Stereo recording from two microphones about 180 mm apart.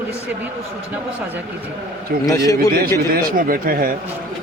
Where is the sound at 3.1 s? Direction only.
55° right (ahead or behind).